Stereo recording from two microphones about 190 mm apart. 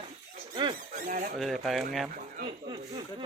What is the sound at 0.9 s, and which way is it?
Squeak, 45° right (ahead or behind).